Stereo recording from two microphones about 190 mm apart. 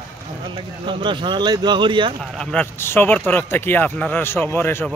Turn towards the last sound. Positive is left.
turn(degrees=10)  # may be behind; listen again after turning